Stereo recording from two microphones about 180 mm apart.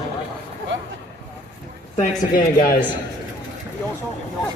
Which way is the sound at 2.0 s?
45° left (ahead or behind).